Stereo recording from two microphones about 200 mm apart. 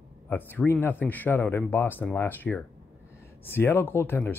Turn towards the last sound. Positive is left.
turn(degrees=10)  # may be behind; listen again after turning